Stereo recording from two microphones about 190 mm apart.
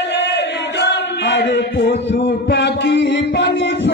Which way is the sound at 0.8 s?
65° left (ahead or behind).